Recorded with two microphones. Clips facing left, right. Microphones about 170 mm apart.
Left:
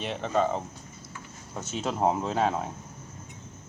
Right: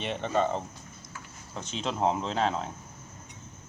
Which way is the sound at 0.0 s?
Centre (ahead or behind).